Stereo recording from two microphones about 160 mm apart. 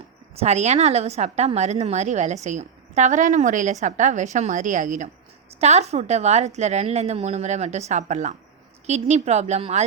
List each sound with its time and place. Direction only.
0.3 s a woman's voice: 45° right (ahead or behind)